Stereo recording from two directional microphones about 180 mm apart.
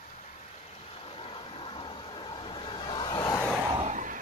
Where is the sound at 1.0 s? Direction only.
30° left (ahead or behind).